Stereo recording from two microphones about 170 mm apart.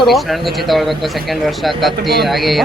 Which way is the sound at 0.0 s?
Centre (ahead or behind).